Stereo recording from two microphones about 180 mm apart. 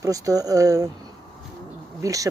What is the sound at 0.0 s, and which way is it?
Speech, 20° right (ahead or behind).